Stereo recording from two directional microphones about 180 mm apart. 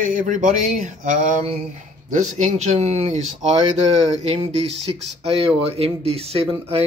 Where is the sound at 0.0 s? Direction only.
50° right (ahead or behind).